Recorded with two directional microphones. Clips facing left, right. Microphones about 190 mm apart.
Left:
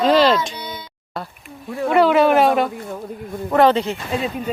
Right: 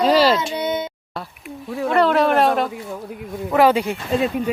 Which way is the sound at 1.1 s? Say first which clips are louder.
Left 2 dB; centre (ahead or behind).